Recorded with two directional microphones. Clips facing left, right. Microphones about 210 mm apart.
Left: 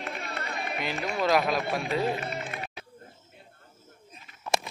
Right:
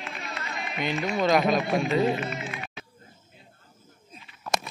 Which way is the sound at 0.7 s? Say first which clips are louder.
Right 5 dB; 5° left (ahead or behind).